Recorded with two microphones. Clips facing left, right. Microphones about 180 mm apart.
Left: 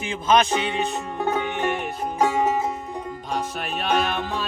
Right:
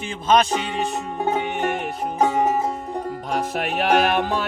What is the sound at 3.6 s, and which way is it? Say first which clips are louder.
Music: right 6 dB; 75° right (ahead or behind).